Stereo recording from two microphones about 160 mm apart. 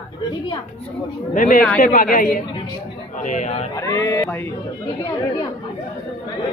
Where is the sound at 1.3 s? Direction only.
55° left (ahead or behind).